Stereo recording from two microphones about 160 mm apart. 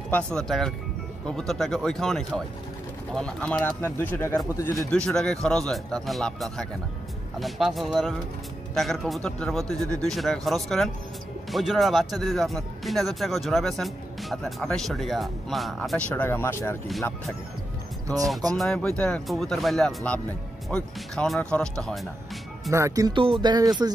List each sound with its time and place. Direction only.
0.1 s speech: 5° left (ahead or behind)
16.2 s speech: 15° left (ahead or behind)
18.6 s speech: 5° left (ahead or behind)
22.7 s speech: 20° right (ahead or behind)